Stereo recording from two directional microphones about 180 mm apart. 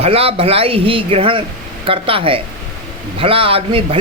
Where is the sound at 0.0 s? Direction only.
35° right (ahead or behind).